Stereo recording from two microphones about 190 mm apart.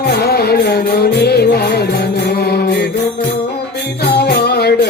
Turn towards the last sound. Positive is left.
turn(degrees=60)  # may be behind; listen again after turning